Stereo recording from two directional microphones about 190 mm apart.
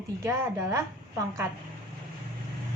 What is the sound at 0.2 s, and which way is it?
Speech, 15° right (ahead or behind).